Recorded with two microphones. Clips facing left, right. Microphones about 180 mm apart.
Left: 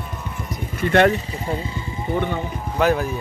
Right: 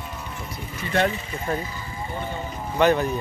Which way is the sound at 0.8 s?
55° left (ahead or behind).